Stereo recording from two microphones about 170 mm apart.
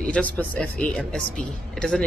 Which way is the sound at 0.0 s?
5° left (ahead or behind).